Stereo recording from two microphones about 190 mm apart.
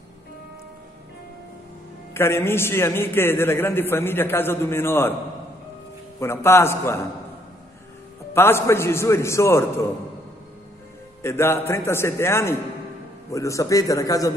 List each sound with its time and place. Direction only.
2.1 s a man's voice: 15° left (ahead or behind)
6.1 s a man's voice: 15° left (ahead or behind)
8.3 s a man's voice: 15° left (ahead or behind)
11.2 s a man's voice: 15° left (ahead or behind)